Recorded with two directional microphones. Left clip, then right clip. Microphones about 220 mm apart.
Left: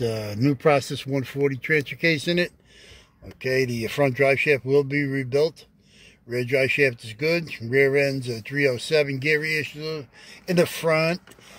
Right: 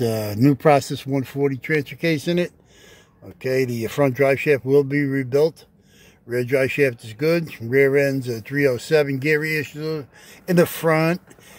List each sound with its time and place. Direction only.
0.0 s speech: 20° right (ahead or behind)